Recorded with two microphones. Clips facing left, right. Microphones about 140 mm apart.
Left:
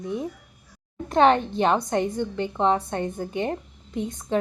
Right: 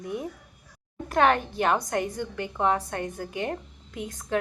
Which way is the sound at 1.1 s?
25° left (ahead or behind).